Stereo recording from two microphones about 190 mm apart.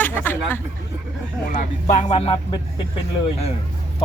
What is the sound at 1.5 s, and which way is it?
Speech, 40° left (ahead or behind).